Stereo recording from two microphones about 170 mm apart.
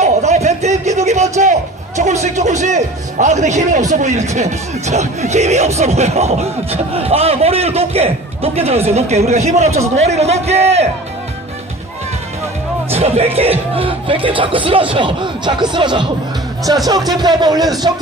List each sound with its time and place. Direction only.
0.0 s a sound: 40° right (ahead or behind)
2.3 s a man's voice: 45° right (ahead or behind)
12.9 s speech: 35° right (ahead or behind)